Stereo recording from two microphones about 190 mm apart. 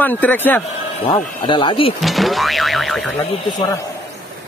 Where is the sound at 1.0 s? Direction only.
25° left (ahead or behind).